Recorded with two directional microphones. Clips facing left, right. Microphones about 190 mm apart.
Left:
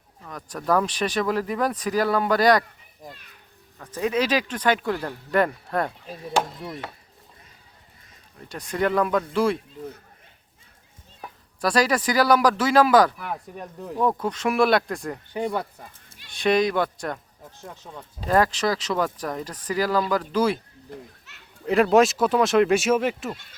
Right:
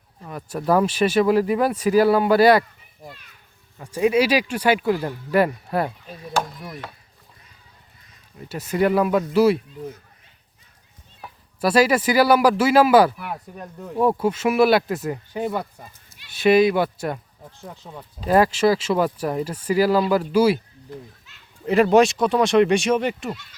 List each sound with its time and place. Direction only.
0.3 s speech: 10° right (ahead or behind)
6.2 s speech: 25° left (ahead or behind)
8.4 s speech: 5° right (ahead or behind)
11.2 s speech: 5° right (ahead or behind)
21.3 s children playing: 70° left (ahead or behind)
21.6 s speech: centre (ahead or behind)